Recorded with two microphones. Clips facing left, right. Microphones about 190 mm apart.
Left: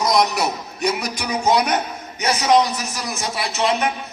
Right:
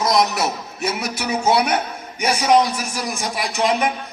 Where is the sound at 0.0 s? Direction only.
Centre (ahead or behind).